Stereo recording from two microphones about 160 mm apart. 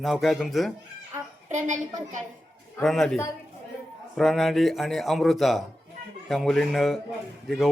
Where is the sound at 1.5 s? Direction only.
50° right (ahead or behind).